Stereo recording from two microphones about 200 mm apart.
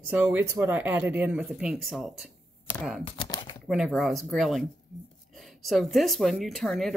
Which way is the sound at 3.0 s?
25° left (ahead or behind).